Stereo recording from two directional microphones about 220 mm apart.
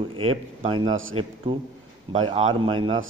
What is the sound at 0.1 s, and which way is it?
Speech, 25° right (ahead or behind).